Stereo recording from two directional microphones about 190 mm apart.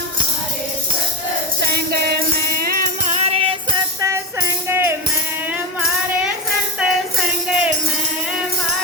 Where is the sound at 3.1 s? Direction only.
35° right (ahead or behind).